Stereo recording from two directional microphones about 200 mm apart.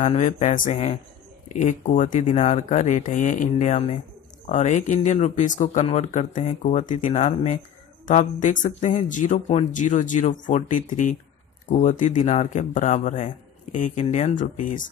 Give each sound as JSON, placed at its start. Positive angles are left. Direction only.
{"t": 0.0, "sound": "speech", "side_deg": 35}